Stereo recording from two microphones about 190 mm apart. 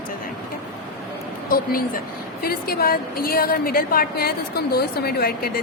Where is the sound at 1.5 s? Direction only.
50° left (ahead or behind).